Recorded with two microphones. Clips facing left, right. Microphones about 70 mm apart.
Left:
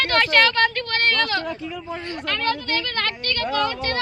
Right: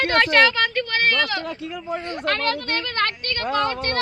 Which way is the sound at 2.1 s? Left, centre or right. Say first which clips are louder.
Even; right.